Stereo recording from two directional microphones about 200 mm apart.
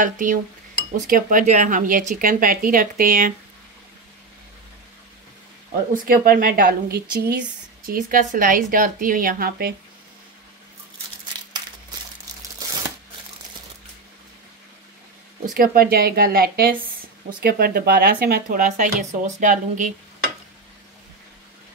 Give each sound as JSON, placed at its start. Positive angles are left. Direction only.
{"t": 0.0, "sound": "cutlery", "side_deg": -40}
{"t": 0.9, "sound": "speech", "side_deg": -40}
{"t": 5.9, "sound": "speech", "side_deg": -45}
{"t": 15.5, "sound": "speech", "side_deg": -45}